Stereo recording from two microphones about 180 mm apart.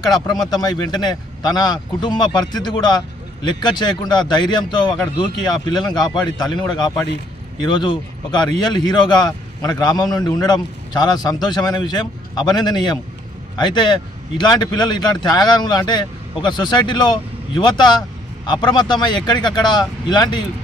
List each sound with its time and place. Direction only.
0.1 s speech: 20° left (ahead or behind)